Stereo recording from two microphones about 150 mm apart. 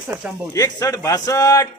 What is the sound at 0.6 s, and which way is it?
Speech, 25° left (ahead or behind).